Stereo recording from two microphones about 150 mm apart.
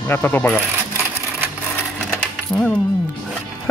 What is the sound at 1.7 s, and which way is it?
Coin, 10° left (ahead or behind).